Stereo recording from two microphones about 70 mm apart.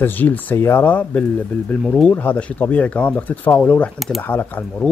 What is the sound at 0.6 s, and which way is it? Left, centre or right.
Speech, left.